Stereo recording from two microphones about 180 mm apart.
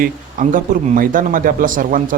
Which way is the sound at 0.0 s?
45° right (ahead or behind).